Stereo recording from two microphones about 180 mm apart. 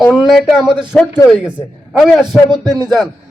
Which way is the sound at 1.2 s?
20° left (ahead or behind).